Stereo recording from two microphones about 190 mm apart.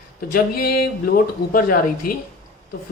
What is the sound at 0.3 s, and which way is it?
Speech, 50° left (ahead or behind).